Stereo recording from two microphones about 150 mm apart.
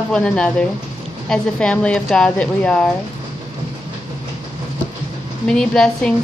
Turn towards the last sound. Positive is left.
turn(degrees=5)  # may be behind; listen again after turning